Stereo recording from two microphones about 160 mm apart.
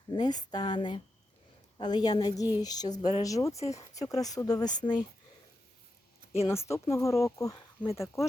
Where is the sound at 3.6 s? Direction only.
45° left (ahead or behind).